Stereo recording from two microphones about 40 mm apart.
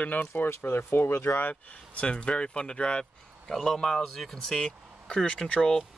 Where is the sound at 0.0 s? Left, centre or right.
Left.